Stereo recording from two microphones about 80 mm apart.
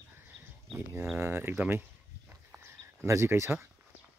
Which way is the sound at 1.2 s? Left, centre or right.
Right.